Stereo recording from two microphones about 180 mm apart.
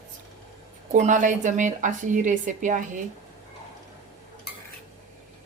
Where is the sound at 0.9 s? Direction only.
45° right (ahead or behind).